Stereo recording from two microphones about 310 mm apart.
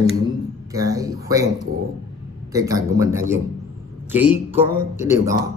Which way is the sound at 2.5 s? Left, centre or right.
Centre.